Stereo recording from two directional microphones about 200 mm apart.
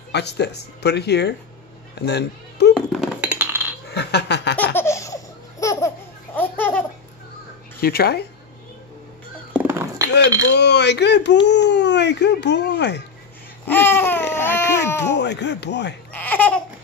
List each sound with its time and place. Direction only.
0.1 s speech: 55° left (ahead or behind)
2.7 s a sound: centre (ahead or behind)
3.9 s a sound: 55° left (ahead or behind)
4.7 s laughter: 15° left (ahead or behind)
7.8 s speech: 50° left (ahead or behind)
9.5 s a sound: 10° right (ahead or behind)
10.5 s speech: 60° left (ahead or behind)
13.7 s babbling: 10° left (ahead or behind)
14.3 s baby cry: 10° left (ahead or behind)
15.0 s speech: 60° left (ahead or behind)
16.1 s babbling: 10° left (ahead or behind)